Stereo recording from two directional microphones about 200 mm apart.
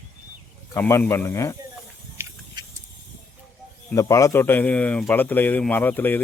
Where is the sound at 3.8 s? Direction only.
15° left (ahead or behind).